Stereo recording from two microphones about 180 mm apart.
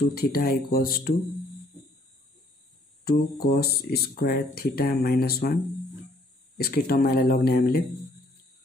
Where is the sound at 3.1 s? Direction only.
60° left (ahead or behind).